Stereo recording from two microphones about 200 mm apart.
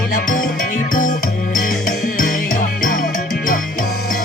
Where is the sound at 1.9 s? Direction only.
45° left (ahead or behind).